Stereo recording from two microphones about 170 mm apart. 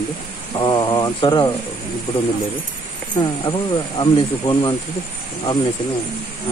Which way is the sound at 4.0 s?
30° left (ahead or behind).